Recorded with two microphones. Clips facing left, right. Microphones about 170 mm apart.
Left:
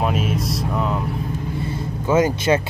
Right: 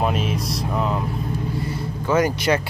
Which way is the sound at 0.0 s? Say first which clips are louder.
Left 1 dB; centre (ahead or behind).